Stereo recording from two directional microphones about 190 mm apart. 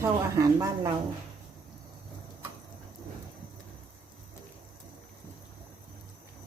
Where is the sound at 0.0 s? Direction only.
15° right (ahead or behind).